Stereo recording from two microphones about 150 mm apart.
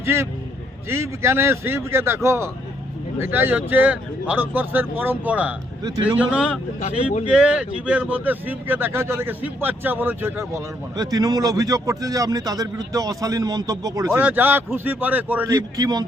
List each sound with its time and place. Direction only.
0.0 s speech: 15° right (ahead or behind)
6.8 s speech: 50° left (ahead or behind)
7.3 s speech: 5° right (ahead or behind); by 14.2 s 25° right (ahead or behind)
14.2 s speech: 15° right (ahead or behind)
15.4 s speech: 25° right (ahead or behind)